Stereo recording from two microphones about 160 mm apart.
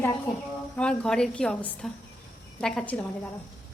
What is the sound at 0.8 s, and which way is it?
A woman's voice, 5° left (ahead or behind).